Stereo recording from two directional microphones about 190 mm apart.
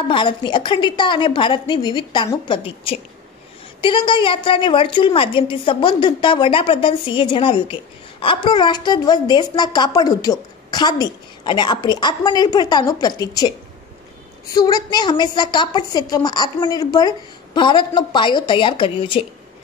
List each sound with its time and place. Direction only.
0.1 s a woman's voice: 25° left (ahead or behind)
14.5 s a woman's voice: 20° left (ahead or behind)